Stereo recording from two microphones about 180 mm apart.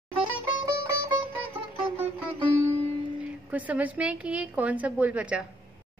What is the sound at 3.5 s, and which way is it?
A woman's voice, 10° right (ahead or behind).